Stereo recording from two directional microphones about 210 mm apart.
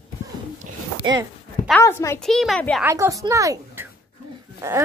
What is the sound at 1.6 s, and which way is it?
A woman's voice, 10° left (ahead or behind).